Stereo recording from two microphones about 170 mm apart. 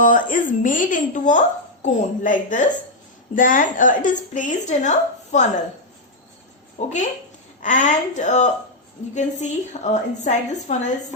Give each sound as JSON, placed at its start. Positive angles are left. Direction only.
{"t": 0.0, "sound": "speech", "side_deg": 50}
{"t": 6.7, "sound": "speech", "side_deg": 45}